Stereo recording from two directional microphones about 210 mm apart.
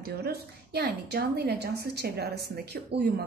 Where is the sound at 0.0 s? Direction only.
50° right (ahead or behind).